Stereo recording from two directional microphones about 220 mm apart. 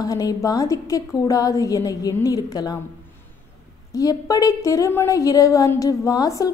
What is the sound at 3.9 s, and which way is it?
Speech, 15° left (ahead or behind).